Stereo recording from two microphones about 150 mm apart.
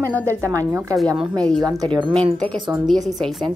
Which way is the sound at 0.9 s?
5° right (ahead or behind).